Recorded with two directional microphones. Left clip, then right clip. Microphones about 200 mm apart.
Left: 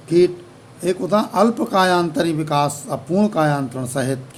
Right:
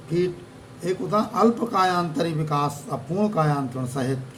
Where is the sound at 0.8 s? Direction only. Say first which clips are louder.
Left 5 dB; 60° left (ahead or behind).